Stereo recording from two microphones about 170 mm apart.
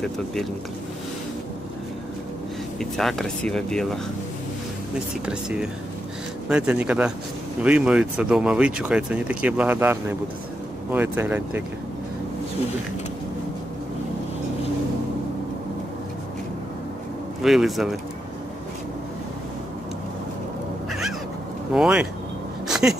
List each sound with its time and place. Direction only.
0.0 s speech: centre (ahead or behind)
2.8 s speech: centre (ahead or behind)
17.4 s speech: centre (ahead or behind)
21.7 s speech: 5° right (ahead or behind)
22.7 s a sound: 5° right (ahead or behind)